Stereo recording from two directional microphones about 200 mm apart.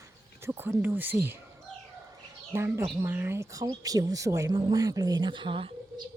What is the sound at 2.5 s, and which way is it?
Speech, 15° right (ahead or behind).